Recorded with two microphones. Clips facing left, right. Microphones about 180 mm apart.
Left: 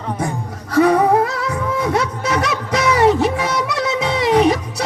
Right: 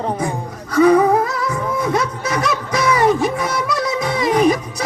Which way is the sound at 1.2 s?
65° left (ahead or behind).